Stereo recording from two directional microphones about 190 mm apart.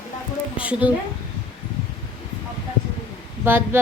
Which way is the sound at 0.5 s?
5° right (ahead or behind).